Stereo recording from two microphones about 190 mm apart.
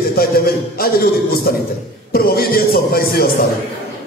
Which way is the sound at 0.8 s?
50° left (ahead or behind).